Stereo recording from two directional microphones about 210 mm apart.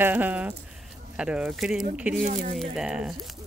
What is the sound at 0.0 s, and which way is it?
Speech, 10° right (ahead or behind).